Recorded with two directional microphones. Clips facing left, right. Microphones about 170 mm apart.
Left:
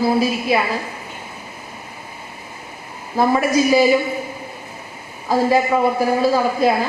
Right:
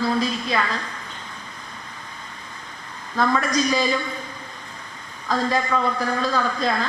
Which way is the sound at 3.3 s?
10° left (ahead or behind).